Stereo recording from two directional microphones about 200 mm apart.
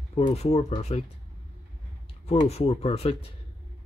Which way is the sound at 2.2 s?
30° left (ahead or behind).